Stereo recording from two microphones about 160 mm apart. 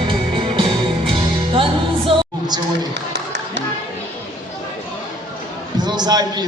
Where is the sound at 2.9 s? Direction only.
90° right.